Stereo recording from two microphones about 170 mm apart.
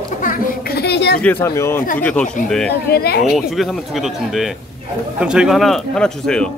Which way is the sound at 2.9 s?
65° left (ahead or behind).